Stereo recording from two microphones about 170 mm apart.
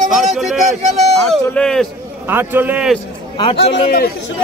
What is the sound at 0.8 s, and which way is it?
Speech, 40° right (ahead or behind).